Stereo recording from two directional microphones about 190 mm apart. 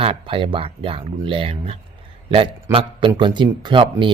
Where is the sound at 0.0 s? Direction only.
30° right (ahead or behind).